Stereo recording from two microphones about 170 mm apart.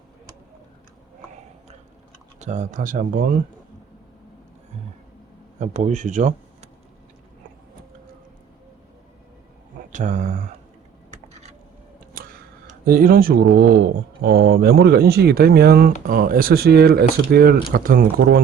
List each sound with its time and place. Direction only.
2.4 s speech: 45° right (ahead or behind)
5.5 s speech: 40° right (ahead or behind)
9.9 s speech: 50° right (ahead or behind)
12.6 s speech: 60° right (ahead or behind)